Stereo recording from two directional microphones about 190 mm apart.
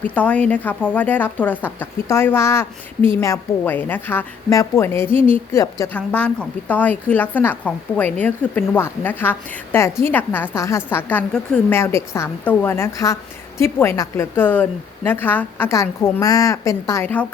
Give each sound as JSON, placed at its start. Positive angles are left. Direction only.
{"t": 0.1, "sound": "a woman's voice", "side_deg": 5}